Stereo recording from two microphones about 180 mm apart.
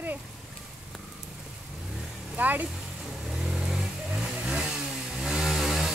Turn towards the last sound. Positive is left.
turn(degrees=0)  # may be behind; listen again after turning